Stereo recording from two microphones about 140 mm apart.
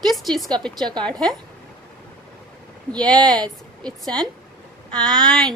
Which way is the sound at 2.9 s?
30° right (ahead or behind).